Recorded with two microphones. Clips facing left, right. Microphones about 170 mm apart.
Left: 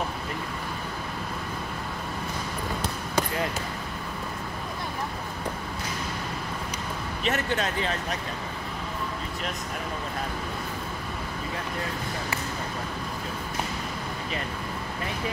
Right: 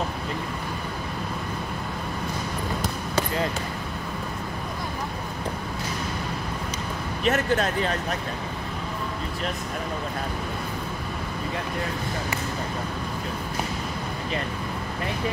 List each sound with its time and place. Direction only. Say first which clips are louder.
7.2 s speech: right 5 dB; 40° right (ahead or behind)